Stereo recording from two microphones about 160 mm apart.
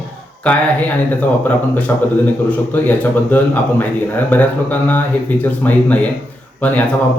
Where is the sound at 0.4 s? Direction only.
10° left (ahead or behind).